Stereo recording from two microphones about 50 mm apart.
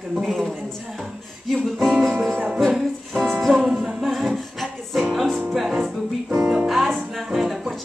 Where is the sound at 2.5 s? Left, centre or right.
Centre.